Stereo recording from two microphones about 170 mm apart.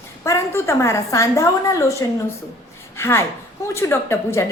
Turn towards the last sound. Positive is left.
turn(degrees=15)  # may be behind; listen again after turning